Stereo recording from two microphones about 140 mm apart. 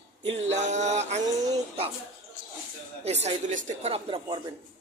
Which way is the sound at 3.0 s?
50° right (ahead or behind).